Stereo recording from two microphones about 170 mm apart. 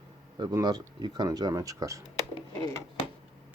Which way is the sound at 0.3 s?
25° right (ahead or behind).